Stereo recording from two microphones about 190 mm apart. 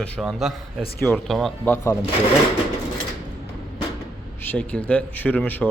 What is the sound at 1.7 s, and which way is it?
Speech, 10° left (ahead or behind).